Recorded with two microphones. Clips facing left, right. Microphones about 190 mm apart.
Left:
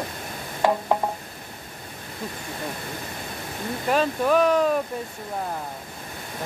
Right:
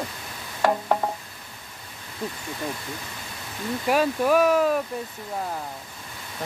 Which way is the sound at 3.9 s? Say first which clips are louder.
Even; 10° right (ahead or behind).